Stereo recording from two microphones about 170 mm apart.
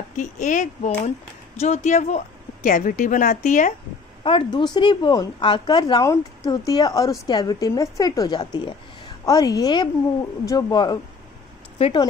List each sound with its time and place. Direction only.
0.2 s speech: 45° left (ahead or behind)
4.2 s speech: 30° left (ahead or behind)